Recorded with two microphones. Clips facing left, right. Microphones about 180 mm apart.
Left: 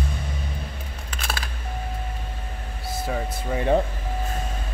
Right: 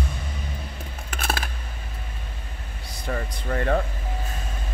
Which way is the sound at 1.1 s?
50° right (ahead or behind).